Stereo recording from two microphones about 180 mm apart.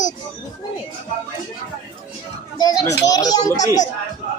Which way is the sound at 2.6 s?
20° left (ahead or behind).